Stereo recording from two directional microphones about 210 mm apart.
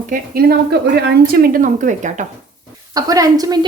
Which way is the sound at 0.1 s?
45° right (ahead or behind).